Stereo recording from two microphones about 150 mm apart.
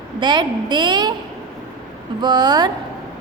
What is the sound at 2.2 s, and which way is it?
Speech, 30° right (ahead or behind).